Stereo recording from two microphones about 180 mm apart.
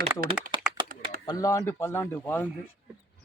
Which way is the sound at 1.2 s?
20° left (ahead or behind).